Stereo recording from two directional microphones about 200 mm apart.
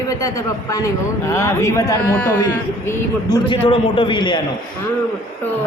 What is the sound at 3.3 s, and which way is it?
A man's voice, 25° left (ahead or behind).